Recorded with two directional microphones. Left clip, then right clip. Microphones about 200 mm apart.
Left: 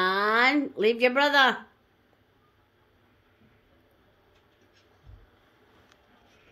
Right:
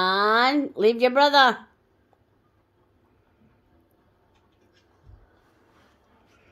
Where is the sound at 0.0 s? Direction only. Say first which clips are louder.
Right 3 dB; 25° right (ahead or behind).